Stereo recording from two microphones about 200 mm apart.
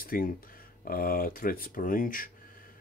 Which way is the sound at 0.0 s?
45° left (ahead or behind).